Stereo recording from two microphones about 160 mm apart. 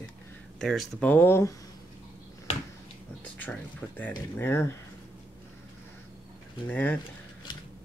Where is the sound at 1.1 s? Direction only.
15° left (ahead or behind).